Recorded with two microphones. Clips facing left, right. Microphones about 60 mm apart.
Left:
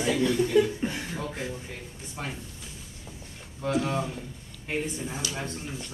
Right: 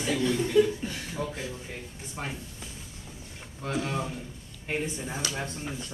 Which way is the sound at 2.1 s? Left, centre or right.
Centre.